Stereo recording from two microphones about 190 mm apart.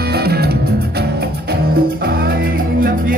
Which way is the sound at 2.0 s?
50° right (ahead or behind).